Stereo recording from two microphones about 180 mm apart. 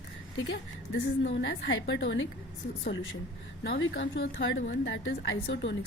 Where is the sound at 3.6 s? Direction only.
75° left (ahead or behind).